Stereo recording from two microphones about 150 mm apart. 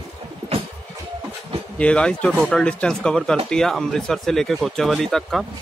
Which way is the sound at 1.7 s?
5° left (ahead or behind).